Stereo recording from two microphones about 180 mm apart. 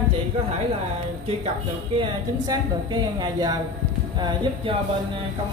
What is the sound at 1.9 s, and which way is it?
A woman's voice, 25° right (ahead or behind).